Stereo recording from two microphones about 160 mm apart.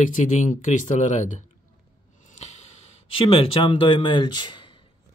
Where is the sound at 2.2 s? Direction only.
45° left (ahead or behind).